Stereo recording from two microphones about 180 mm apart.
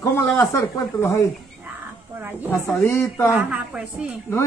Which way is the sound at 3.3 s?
10° right (ahead or behind).